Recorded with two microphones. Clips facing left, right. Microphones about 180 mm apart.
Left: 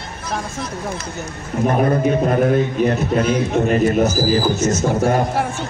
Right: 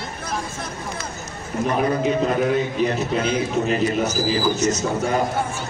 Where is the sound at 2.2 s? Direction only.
50° left (ahead or behind).